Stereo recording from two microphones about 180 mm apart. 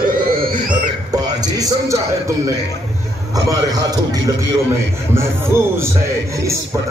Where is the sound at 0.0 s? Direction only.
55° right (ahead or behind).